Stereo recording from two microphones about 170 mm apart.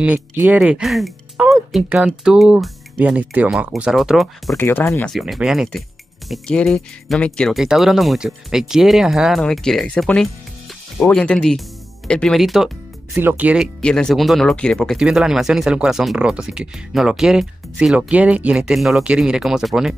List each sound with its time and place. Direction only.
0.0 s speech: 10° right (ahead or behind)
4.6 s speech: 10° left (ahead or behind)
5.1 s speech: centre (ahead or behind)
13.7 s speech: 5° left (ahead or behind)